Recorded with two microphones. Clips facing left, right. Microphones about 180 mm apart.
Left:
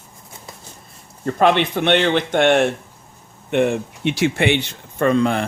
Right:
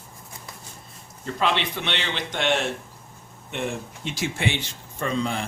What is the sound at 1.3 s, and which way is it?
Speech, 55° left (ahead or behind).